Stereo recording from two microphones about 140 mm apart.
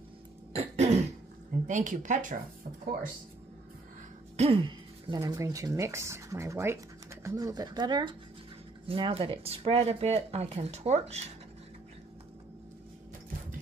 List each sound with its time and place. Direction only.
0.5 s throat clearing: 50° right (ahead or behind)
1.7 s speech: 65° right (ahead or behind)
4.4 s speech: 40° right (ahead or behind)